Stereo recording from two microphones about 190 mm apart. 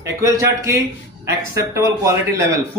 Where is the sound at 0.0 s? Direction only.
15° right (ahead or behind).